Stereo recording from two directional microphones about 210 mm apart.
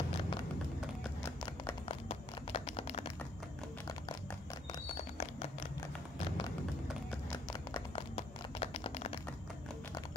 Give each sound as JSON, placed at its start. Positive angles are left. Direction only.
{"t": 0.2, "sound": "tap", "side_deg": 20}
{"t": 1.2, "sound": "clip-clop", "side_deg": 15}
{"t": 2.0, "sound": "a sound", "side_deg": 25}
{"t": 4.9, "sound": "music", "side_deg": 30}
{"t": 6.2, "sound": "run", "side_deg": 25}
{"t": 7.3, "sound": "a sound", "side_deg": 20}